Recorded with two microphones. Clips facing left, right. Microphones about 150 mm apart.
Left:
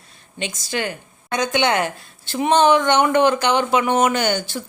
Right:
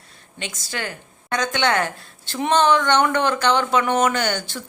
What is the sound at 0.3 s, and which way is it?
A woman's voice, 20° left (ahead or behind).